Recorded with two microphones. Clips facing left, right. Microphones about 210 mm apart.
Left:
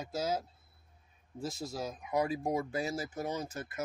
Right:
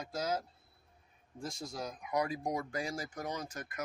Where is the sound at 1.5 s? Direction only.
5° left (ahead or behind).